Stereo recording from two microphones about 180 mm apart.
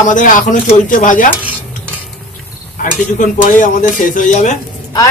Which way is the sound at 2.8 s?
45° left (ahead or behind).